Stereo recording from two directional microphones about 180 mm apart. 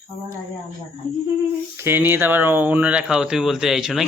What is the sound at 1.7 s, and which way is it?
Speech, 10° right (ahead or behind).